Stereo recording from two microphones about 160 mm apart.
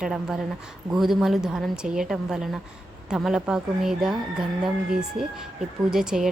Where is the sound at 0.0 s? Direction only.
5° right (ahead or behind).